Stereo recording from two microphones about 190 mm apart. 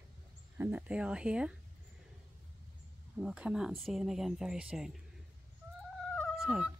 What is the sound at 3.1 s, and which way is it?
Speech, 5° right (ahead or behind).